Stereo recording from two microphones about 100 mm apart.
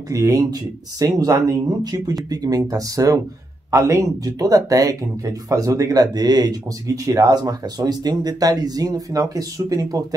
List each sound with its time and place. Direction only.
0.1 s speech: 35° right (ahead or behind)